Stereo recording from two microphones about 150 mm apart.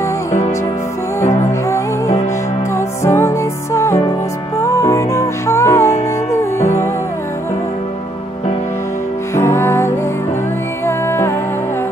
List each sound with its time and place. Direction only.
1.2 s music: 20° left (ahead or behind)
9.3 s music: 20° left (ahead or behind)